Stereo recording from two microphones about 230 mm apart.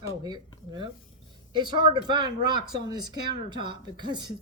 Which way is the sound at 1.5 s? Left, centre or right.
Centre.